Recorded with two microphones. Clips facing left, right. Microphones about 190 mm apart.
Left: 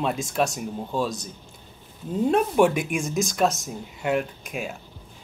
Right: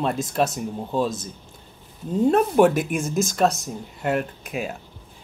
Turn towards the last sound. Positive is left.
turn(degrees=0)  # may be behind; listen again after turning